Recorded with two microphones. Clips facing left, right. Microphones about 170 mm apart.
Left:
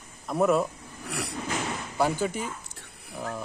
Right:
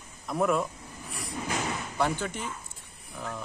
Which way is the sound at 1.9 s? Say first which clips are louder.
Left 4 dB; 10° left (ahead or behind).